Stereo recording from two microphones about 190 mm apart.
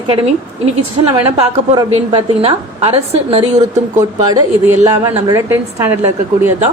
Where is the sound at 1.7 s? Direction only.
30° right (ahead or behind).